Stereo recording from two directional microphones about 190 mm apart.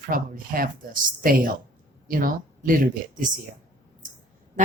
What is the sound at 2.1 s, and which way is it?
Speech, 45° right (ahead or behind).